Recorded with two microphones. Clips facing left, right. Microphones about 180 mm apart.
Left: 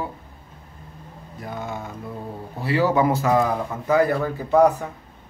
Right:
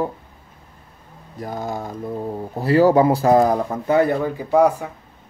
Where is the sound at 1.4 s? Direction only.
40° right (ahead or behind); by 4.8 s 10° right (ahead or behind).